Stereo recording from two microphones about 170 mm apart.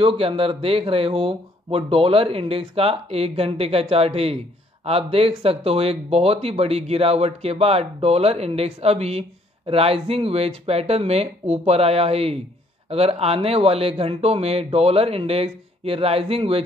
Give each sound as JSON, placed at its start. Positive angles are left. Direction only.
{"t": 0.0, "sound": "speech", "side_deg": -30}